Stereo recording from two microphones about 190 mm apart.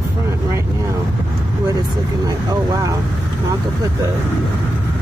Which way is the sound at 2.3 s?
15° right (ahead or behind).